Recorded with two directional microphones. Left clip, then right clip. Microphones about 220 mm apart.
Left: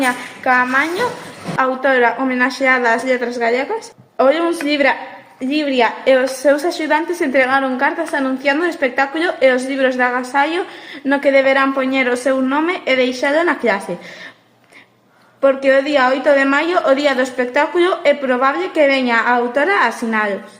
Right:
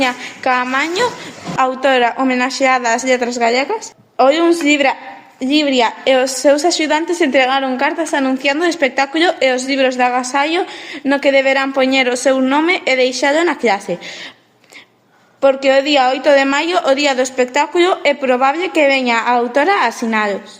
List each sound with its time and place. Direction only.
0.0 s a woman's voice: 40° right (ahead or behind)
15.4 s a woman's voice: 35° right (ahead or behind)